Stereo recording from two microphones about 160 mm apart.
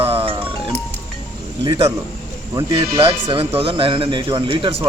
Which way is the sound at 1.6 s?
30° right (ahead or behind).